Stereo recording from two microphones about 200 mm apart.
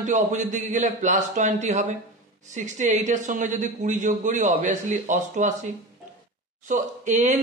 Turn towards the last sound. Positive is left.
turn(degrees=-35)  # may be behind; listen again after turning